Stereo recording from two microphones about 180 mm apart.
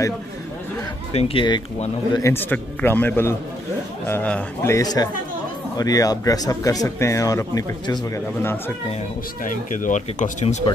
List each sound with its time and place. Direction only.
1.1 s speech: 30° left (ahead or behind)
2.1 s a man's voice: 15° left (ahead or behind)
9.4 s speech: 45° left (ahead or behind)